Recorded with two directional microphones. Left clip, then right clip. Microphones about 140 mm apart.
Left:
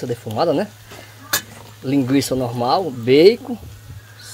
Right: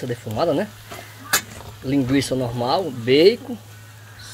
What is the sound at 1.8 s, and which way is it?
Speech, 35° left (ahead or behind).